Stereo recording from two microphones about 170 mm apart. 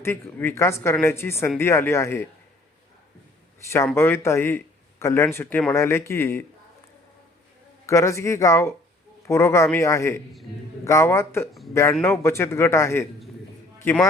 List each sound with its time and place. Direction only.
0.0 s speech: 15° left (ahead or behind)
3.8 s speech: 15° left (ahead or behind)
7.9 s a man's voice: 15° left (ahead or behind)